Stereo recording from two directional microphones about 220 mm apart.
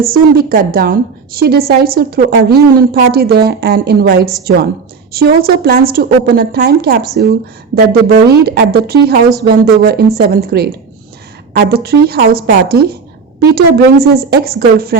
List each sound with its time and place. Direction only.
0.0 s a woman's voice: 40° right (ahead or behind)
8.0 s a woman's voice: 45° right (ahead or behind)